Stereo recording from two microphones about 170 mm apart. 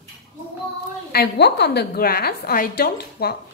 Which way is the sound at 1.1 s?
75° left (ahead or behind).